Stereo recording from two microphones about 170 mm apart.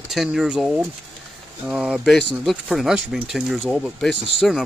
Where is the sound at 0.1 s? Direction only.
Centre (ahead or behind).